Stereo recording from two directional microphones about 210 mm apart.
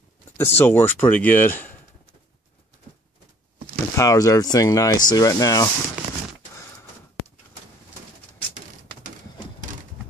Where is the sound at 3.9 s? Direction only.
15° left (ahead or behind).